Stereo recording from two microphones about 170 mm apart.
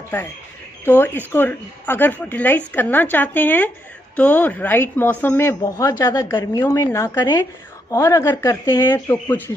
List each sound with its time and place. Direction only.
0.8 s a woman's voice: 10° left (ahead or behind)